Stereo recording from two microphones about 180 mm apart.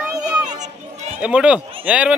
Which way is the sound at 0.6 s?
40° right (ahead or behind).